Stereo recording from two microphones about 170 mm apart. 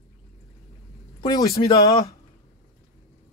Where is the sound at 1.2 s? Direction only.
20° left (ahead or behind).